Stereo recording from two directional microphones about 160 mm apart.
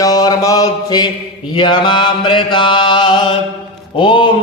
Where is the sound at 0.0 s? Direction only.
25° left (ahead or behind).